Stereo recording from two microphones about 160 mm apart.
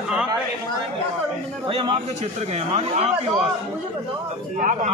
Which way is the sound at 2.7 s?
40° right (ahead or behind).